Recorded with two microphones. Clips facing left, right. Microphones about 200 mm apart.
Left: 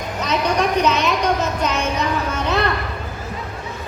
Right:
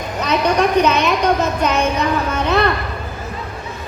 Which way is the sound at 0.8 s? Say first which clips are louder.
Right 3 dB; 60° right (ahead or behind).